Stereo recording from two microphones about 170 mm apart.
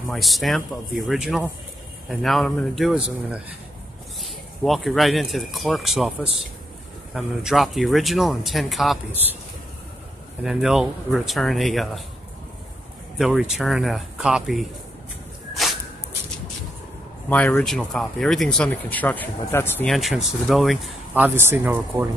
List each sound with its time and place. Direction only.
0.1 s speech: centre (ahead or behind)
7.2 s speech: centre (ahead or behind)
10.4 s speech: centre (ahead or behind)
13.2 s speech: 5° right (ahead or behind)
17.3 s speech: 10° left (ahead or behind)
19.9 s speech: centre (ahead or behind)
21.1 s speech: 10° right (ahead or behind)